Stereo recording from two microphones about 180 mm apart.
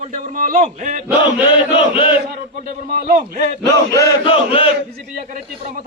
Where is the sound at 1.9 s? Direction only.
30° left (ahead or behind).